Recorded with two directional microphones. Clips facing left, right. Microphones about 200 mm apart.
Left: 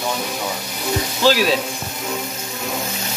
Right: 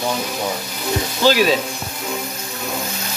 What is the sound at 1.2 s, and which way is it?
Music, centre (ahead or behind).